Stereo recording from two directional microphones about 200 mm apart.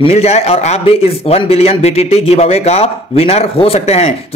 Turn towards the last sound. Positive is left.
turn(degrees=30)  # may be behind; listen again after turning